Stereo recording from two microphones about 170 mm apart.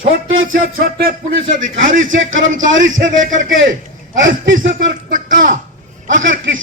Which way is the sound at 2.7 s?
90° right.